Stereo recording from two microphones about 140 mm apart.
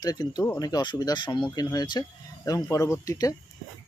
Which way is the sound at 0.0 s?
25° left (ahead or behind).